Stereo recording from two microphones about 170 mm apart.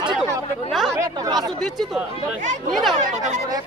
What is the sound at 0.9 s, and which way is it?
Speech, 25° right (ahead or behind).